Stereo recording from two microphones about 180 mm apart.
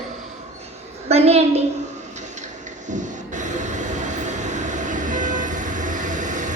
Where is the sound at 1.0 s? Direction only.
35° right (ahead or behind).